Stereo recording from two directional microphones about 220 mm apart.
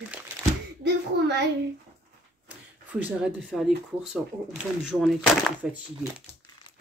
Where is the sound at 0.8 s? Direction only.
50° right (ahead or behind).